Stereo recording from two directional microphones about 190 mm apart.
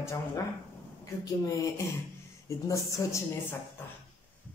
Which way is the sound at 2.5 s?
15° left (ahead or behind).